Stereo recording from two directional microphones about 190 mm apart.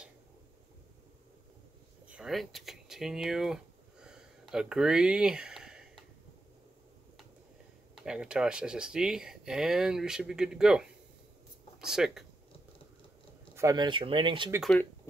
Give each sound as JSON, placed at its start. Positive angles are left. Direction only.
{"t": 2.0, "sound": "speech", "side_deg": -5}
{"t": 4.0, "sound": "a sound", "side_deg": -5}
{"t": 7.9, "sound": "speech", "side_deg": -5}
{"t": 13.6, "sound": "speech", "side_deg": -20}